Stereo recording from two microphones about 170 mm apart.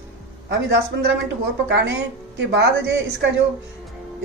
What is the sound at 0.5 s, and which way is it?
A woman's voice, 85° right.